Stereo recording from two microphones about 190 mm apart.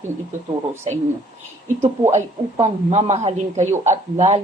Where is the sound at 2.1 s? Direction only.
35° right (ahead or behind).